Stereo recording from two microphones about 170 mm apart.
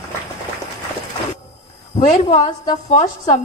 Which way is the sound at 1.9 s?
40° left (ahead or behind).